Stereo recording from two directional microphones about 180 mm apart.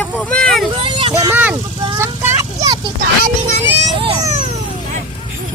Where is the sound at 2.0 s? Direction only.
15° right (ahead or behind).